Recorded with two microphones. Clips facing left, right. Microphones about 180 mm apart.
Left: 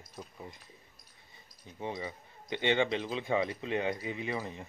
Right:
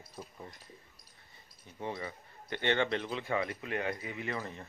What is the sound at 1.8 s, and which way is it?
Speech, 15° left (ahead or behind).